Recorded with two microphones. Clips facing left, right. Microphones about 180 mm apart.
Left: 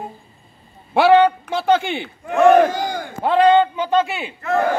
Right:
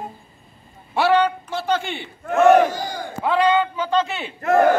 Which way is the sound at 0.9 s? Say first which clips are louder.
Left 5 dB; 55° left (ahead or behind).